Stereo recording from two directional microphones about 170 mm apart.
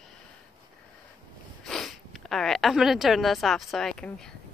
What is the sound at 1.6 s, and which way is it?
Speech, centre (ahead or behind).